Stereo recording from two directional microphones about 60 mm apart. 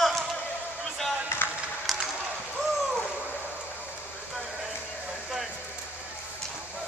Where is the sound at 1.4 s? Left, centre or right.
Left.